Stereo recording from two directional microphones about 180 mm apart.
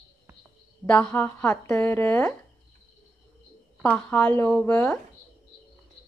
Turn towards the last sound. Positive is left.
turn(degrees=10)  # may be behind; listen again after turning